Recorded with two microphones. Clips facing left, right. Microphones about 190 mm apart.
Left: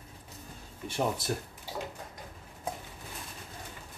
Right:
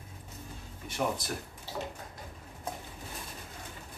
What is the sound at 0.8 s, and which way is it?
Speech, 30° left (ahead or behind).